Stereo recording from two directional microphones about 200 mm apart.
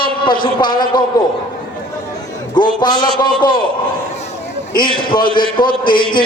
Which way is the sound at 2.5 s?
20° left (ahead or behind).